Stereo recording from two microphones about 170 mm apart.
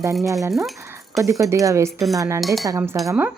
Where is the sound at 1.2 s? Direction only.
20° right (ahead or behind).